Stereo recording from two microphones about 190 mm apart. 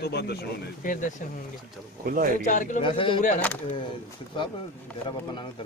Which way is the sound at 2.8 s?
25° left (ahead or behind).